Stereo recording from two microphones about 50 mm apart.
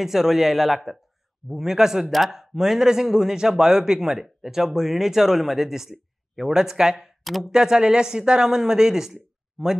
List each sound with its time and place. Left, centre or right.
0.0 s speech: centre
7.2 s speech: centre
7.5 s speech: centre